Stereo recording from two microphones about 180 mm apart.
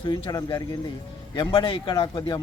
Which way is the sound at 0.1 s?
20° left (ahead or behind).